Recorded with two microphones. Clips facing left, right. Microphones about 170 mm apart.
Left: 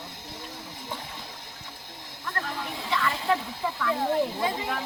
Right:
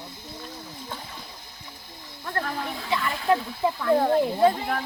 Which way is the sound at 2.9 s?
20° right (ahead or behind).